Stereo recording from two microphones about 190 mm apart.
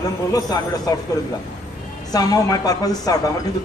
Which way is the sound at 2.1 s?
20° left (ahead or behind).